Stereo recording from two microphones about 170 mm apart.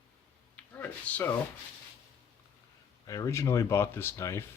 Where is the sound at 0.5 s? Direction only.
10° left (ahead or behind).